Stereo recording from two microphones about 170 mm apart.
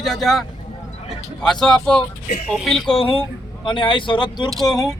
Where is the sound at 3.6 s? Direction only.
30° left (ahead or behind).